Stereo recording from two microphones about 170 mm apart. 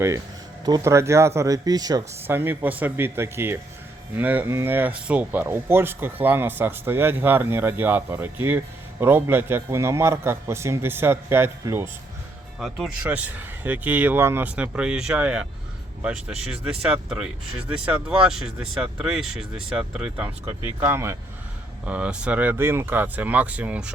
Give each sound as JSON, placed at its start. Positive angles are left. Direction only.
{"t": 0.6, "sound": "speech", "side_deg": -20}
{"t": 12.5, "sound": "speech", "side_deg": 0}